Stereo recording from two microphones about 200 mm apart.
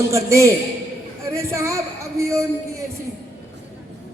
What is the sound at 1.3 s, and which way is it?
Music, 15° right (ahead or behind).